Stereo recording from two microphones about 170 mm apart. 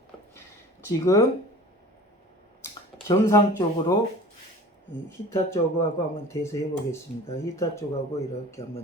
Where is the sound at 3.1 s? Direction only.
15° left (ahead or behind).